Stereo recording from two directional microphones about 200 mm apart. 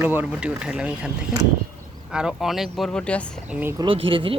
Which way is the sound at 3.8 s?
25° right (ahead or behind).